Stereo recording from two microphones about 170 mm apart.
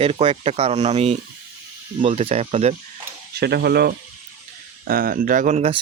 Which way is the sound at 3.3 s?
70° right (ahead or behind).